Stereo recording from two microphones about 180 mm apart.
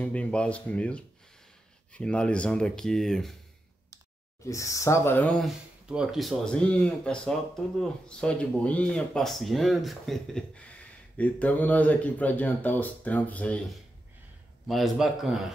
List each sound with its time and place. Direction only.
0.0 s speech: 5° left (ahead or behind)
4.5 s speech: 15° left (ahead or behind)
5.4 s speech: 5° right (ahead or behind)
14.7 s speech: centre (ahead or behind)